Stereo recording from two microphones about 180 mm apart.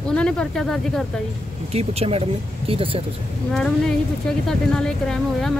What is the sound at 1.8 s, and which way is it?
Speech, 35° right (ahead or behind).